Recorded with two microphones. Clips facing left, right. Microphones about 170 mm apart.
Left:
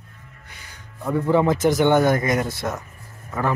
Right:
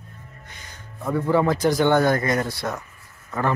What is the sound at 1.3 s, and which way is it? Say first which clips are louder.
Speech: left 2 dB; 20° left (ahead or behind).